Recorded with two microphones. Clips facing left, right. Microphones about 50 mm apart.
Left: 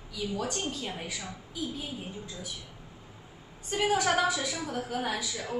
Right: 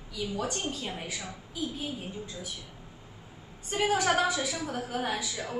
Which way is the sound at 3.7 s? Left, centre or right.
Centre.